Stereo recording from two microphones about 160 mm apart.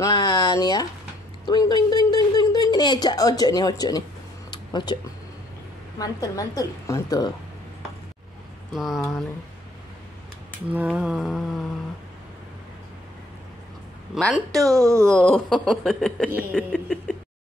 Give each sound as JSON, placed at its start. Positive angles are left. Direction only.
{"t": 0.0, "sound": "a sound", "side_deg": 25}
{"t": 5.9, "sound": "a woman's voice", "side_deg": 20}
{"t": 8.7, "sound": "speech", "side_deg": 0}
{"t": 10.7, "sound": "speech", "side_deg": -10}
{"t": 14.1, "sound": "speech", "side_deg": 0}
{"t": 14.6, "sound": "speech", "side_deg": -20}
{"t": 15.0, "sound": "speech", "side_deg": 5}
{"t": 16.3, "sound": "a sound", "side_deg": -10}
{"t": 16.7, "sound": "a sound", "side_deg": 5}